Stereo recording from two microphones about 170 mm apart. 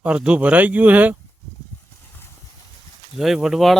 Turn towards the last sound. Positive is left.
turn(degrees=0)  # may be behind; listen again after turning